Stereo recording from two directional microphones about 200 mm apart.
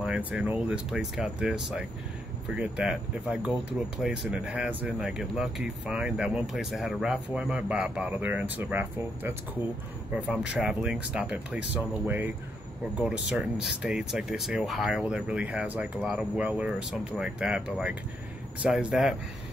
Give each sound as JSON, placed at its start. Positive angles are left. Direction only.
{"t": 0.0, "sound": "speech", "side_deg": -5}
{"t": 13.3, "sound": "speech", "side_deg": -5}